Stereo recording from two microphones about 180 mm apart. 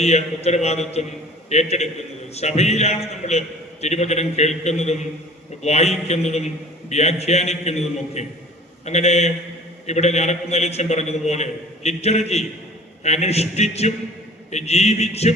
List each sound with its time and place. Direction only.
0.0 s a man's voice: 35° left (ahead or behind)